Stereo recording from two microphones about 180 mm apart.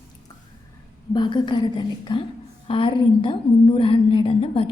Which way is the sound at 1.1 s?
25° left (ahead or behind).